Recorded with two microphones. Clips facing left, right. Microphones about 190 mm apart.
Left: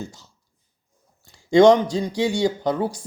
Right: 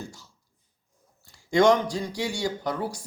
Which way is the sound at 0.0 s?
20° left (ahead or behind).